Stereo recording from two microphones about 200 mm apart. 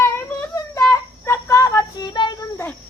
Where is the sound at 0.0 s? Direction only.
15° left (ahead or behind).